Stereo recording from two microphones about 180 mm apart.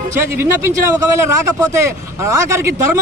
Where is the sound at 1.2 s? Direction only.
15° right (ahead or behind).